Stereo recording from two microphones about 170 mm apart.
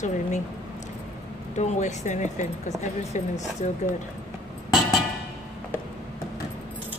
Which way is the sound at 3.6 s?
45° left (ahead or behind).